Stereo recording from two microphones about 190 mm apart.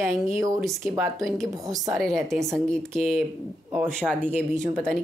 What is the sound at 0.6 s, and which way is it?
Speech, centre (ahead or behind).